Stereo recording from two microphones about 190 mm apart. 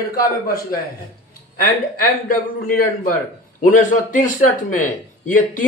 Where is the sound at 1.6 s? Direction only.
50° left (ahead or behind).